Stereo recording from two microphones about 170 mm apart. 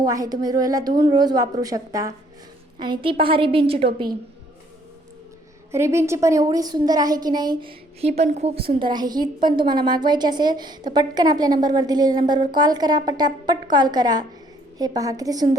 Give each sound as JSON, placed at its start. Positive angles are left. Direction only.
{"t": 0.0, "sound": "a woman's voice", "side_deg": -20}
{"t": 5.7, "sound": "a woman's voice", "side_deg": -15}
{"t": 8.8, "sound": "a woman's voice", "side_deg": -25}